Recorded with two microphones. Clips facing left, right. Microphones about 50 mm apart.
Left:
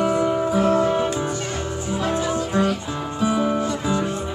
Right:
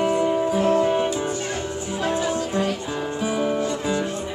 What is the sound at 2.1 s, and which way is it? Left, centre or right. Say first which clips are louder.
Music: even; left.